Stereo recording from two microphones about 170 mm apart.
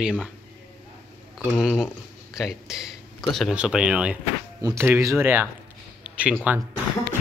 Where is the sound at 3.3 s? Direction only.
5° right (ahead or behind).